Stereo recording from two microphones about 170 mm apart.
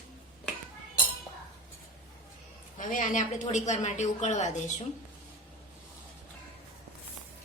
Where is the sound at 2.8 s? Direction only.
50° left (ahead or behind).